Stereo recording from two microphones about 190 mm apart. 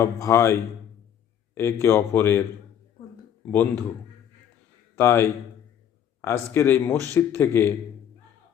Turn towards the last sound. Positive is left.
turn(degrees=15)  # may be behind; listen again after turning